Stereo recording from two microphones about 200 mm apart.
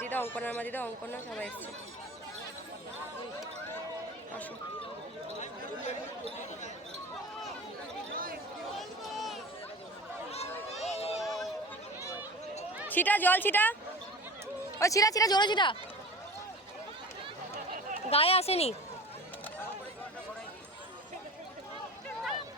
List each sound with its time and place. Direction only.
0.0 s speech: 10° left (ahead or behind)
5.4 s chatter: 35° left (ahead or behind)
8.1 s a sound: 45° right (ahead or behind)
9.1 s chatter: centre (ahead or behind)
10.8 s a sound: 30° left (ahead or behind)
11.2 s a sound: centre (ahead or behind)
12.9 s speech: 10° left (ahead or behind)
14.8 s speech: 15° left (ahead or behind)
18.1 s speech: 30° left (ahead or behind)